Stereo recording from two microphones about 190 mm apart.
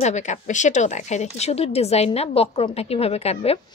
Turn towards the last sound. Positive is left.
turn(degrees=35)  # may be behind; listen again after turning